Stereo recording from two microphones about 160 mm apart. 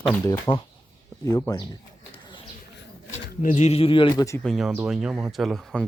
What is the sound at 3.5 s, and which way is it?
Speech, 45° left (ahead or behind).